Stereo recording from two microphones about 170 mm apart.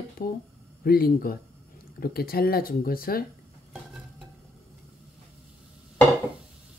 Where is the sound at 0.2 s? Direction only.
60° left (ahead or behind).